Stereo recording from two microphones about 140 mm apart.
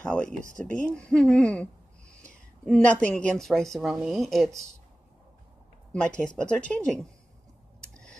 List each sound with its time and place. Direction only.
0.0 s speech: 10° left (ahead or behind)
0.4 s speech: 65° right (ahead or behind)
0.8 s a woman's voice: 5° left (ahead or behind)
5.9 s speech: 5° left (ahead or behind)
7.9 s a sound: 5° left (ahead or behind)